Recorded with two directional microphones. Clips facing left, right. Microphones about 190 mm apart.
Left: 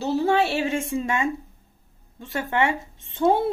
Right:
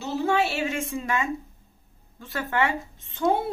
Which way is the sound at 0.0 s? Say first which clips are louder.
Left 3 dB; 35° left (ahead or behind).